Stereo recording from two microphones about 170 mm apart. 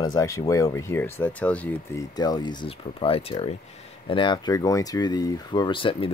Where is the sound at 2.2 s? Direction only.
25° left (ahead or behind).